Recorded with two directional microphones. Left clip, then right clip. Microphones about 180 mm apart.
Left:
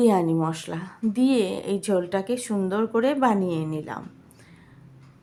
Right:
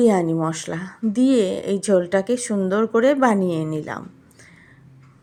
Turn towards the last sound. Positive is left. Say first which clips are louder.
# right 4 dB
turn(degrees=-20)  # may be behind; listen again after turning